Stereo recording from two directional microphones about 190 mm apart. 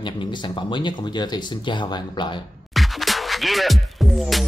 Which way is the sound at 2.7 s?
Centre (ahead or behind).